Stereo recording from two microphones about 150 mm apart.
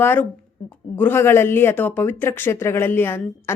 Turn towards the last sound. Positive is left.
turn(degrees=15)  # may be behind; listen again after turning